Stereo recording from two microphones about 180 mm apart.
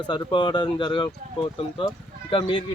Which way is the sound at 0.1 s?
25° left (ahead or behind).